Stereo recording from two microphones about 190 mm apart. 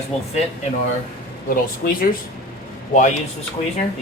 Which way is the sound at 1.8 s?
50° left (ahead or behind).